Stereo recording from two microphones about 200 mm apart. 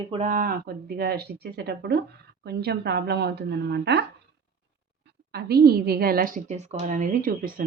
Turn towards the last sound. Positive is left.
turn(degrees=-45)  # may be behind; listen again after turning